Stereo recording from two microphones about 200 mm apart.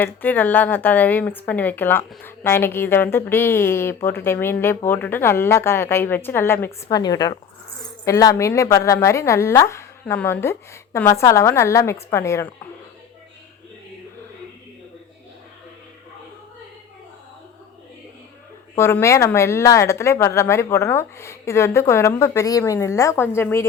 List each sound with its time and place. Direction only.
0.0 s a woman's voice: 10° left (ahead or behind)
18.8 s a woman's voice: 10° left (ahead or behind)